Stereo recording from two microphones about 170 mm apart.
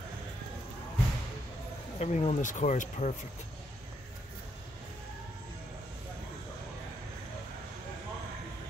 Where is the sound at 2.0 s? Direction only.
40° left (ahead or behind).